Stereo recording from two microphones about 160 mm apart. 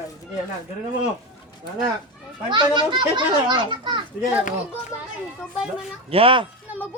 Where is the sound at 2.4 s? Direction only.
30° right (ahead or behind).